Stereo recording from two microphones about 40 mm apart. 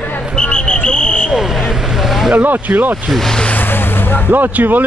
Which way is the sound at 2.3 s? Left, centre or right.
Right.